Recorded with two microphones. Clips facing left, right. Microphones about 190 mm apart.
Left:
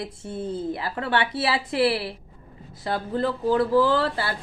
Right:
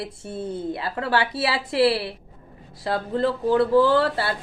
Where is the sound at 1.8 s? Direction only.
25° right (ahead or behind).